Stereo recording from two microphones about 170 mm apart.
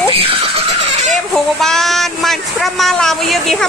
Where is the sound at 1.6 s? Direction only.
Centre (ahead or behind).